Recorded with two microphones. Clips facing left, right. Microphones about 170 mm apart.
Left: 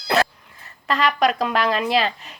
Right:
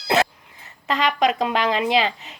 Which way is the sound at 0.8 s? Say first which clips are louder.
Left 1 dB; 20° right (ahead or behind).